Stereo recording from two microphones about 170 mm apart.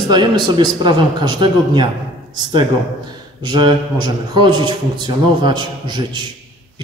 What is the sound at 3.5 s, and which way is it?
A man's voice, 25° right (ahead or behind).